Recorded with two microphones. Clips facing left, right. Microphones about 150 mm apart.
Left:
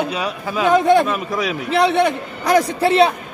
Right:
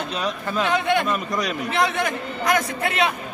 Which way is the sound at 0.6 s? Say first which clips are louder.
Left 9 dB; 40° left (ahead or behind).